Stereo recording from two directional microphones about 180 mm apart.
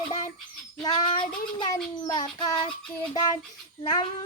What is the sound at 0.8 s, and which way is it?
Speech, 25° left (ahead or behind).